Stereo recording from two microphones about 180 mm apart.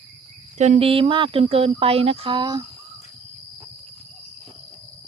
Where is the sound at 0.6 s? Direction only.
35° right (ahead or behind).